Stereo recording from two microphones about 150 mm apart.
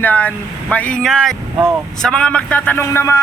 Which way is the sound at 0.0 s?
10° left (ahead or behind).